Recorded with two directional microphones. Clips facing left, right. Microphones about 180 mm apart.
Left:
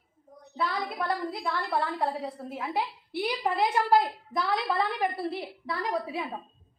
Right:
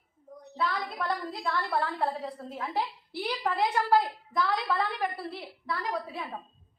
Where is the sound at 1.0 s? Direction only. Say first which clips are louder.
Left 1 dB; 10° left (ahead or behind).